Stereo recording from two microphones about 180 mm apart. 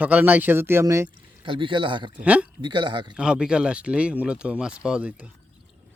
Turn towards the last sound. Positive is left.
turn(degrees=-5)  # may be behind; listen again after turning